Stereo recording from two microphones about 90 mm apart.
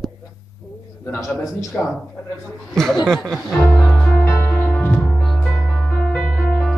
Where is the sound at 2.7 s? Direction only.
5° left (ahead or behind).